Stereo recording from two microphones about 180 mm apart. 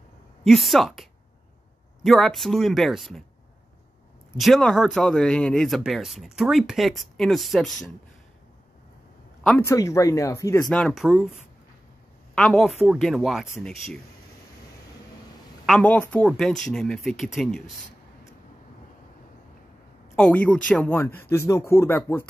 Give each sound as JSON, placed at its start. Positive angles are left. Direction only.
{"t": 0.4, "sound": "speech", "side_deg": 0}
{"t": 2.0, "sound": "speech", "side_deg": 0}
{"t": 4.4, "sound": "speech", "side_deg": 0}
{"t": 9.6, "sound": "speech", "side_deg": 15}
{"t": 10.8, "sound": "speech", "side_deg": 0}
{"t": 12.4, "sound": "speech", "side_deg": 5}
{"t": 15.6, "sound": "speech", "side_deg": 5}
{"t": 20.2, "sound": "speech", "side_deg": 5}